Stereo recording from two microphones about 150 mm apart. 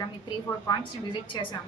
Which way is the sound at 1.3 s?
30° left (ahead or behind).